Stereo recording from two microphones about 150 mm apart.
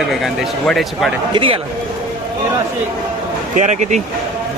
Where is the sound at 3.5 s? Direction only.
50° right (ahead or behind).